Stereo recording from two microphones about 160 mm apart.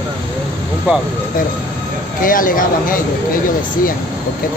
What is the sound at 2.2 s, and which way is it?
Speech, 60° left (ahead or behind).